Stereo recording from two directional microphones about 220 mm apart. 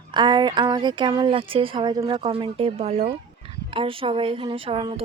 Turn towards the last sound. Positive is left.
turn(degrees=-25)  # may be behind; listen again after turning